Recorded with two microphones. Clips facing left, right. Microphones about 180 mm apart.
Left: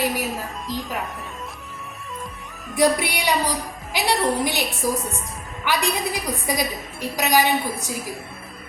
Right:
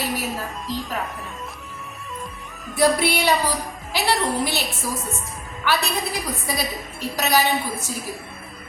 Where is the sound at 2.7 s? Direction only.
15° left (ahead or behind).